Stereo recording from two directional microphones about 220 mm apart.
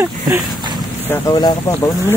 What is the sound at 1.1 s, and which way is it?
Speech, 15° left (ahead or behind).